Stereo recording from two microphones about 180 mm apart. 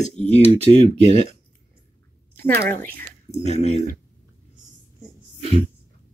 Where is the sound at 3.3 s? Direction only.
35° left (ahead or behind).